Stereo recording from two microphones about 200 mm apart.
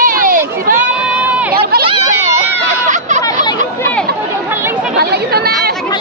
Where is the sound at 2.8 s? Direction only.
40° right (ahead or behind).